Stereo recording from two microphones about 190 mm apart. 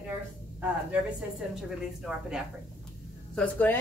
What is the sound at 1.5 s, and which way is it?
Speech, 5° right (ahead or behind).